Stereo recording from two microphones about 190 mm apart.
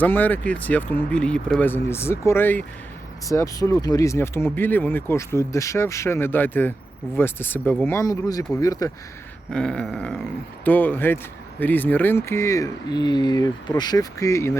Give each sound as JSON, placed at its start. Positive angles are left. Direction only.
{"t": 0.0, "sound": "speech", "side_deg": 10}
{"t": 9.5, "sound": "a sound", "side_deg": 5}
{"t": 10.6, "sound": "speech", "side_deg": 10}